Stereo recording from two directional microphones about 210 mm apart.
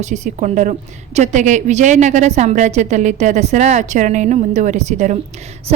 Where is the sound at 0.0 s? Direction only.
35° right (ahead or behind).